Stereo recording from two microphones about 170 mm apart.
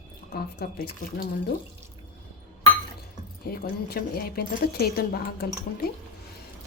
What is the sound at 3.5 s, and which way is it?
Speech, 65° left (ahead or behind).